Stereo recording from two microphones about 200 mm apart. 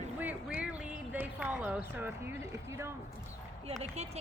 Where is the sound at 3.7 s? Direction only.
35° right (ahead or behind).